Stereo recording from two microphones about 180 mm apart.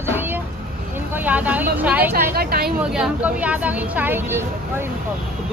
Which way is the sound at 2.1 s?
60° right (ahead or behind).